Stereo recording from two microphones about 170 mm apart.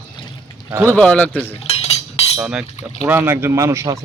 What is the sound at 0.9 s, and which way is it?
Speech, 10° left (ahead or behind).